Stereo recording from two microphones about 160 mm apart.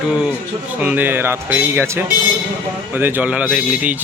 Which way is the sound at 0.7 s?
10° right (ahead or behind).